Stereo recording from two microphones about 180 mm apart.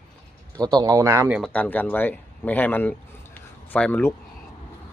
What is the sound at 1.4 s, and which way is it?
Speech, 10° left (ahead or behind).